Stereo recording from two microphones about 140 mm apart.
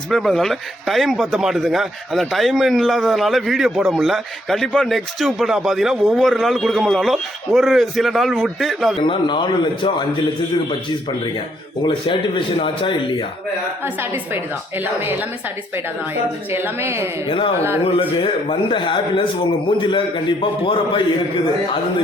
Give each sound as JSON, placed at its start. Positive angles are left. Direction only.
{"t": 0.1, "sound": "speech", "side_deg": 0}
{"t": 9.0, "sound": "a man's voice", "side_deg": 35}
{"t": 11.8, "sound": "a man's voice", "side_deg": 40}
{"t": 16.5, "sound": "a woman's voice", "side_deg": -15}
{"t": 17.2, "sound": "a man's voice", "side_deg": 35}